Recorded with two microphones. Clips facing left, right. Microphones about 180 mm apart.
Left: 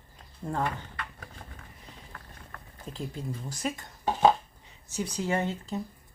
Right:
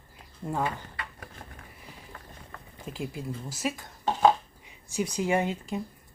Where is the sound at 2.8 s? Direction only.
10° right (ahead or behind).